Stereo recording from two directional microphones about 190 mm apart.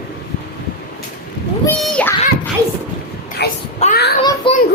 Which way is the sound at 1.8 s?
5° left (ahead or behind).